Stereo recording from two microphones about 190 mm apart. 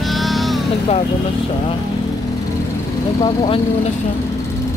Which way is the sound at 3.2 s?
30° left (ahead or behind).